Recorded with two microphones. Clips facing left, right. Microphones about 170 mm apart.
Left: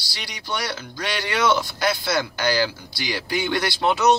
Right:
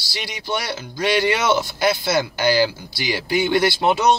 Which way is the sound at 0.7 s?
10° right (ahead or behind).